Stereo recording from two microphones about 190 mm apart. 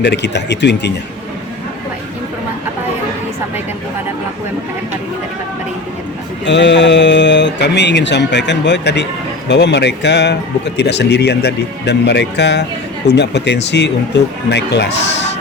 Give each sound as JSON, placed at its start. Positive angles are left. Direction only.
{"t": 0.0, "sound": "speech", "side_deg": 65}
{"t": 6.4, "sound": "speech", "side_deg": 70}